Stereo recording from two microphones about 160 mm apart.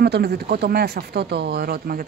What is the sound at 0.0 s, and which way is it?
Speech, 85° right.